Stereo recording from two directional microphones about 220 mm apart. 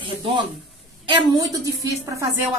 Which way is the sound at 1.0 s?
20° right (ahead or behind).